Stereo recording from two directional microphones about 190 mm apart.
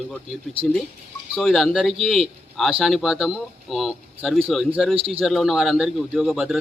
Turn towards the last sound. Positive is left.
turn(degrees=0)  # may be behind; listen again after turning